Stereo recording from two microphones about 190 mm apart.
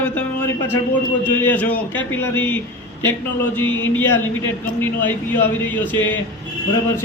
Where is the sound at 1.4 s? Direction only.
10° left (ahead or behind).